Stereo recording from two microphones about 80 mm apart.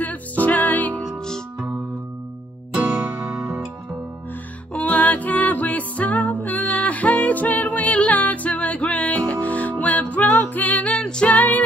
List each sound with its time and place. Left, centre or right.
0.0 s music: centre
1.2 s music: centre
2.7 s music: centre
4.7 s music: centre